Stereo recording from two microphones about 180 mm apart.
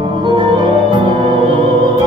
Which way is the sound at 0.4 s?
25° right (ahead or behind).